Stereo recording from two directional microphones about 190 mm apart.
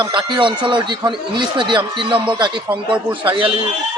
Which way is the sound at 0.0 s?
25° right (ahead or behind).